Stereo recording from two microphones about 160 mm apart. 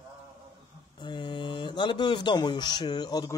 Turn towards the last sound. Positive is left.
turn(degrees=25)  # may be behind; listen again after turning